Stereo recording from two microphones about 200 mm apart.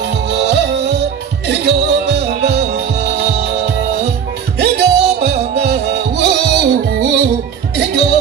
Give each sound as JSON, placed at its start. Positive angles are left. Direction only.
{"t": 0.3, "sound": "music", "side_deg": -60}